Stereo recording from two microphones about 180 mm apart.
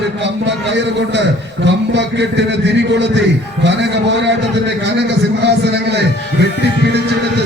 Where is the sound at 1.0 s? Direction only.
80° right.